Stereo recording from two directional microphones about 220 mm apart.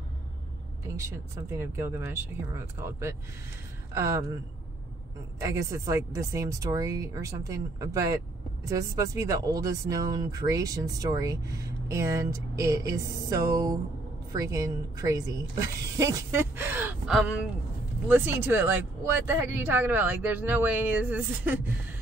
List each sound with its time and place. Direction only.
1.5 s speech: 10° right (ahead or behind)
5.4 s speech: 15° right (ahead or behind)